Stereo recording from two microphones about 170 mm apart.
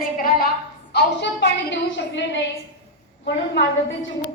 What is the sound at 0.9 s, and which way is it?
A woman's voice, 85° left.